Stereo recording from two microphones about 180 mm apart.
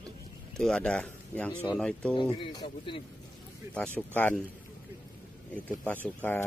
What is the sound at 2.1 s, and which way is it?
Speech, 30° left (ahead or behind).